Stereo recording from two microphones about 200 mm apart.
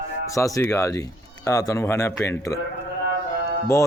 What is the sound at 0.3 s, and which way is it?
Speech, 15° left (ahead or behind).